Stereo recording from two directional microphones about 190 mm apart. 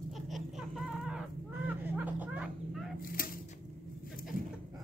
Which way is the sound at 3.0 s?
50° left (ahead or behind).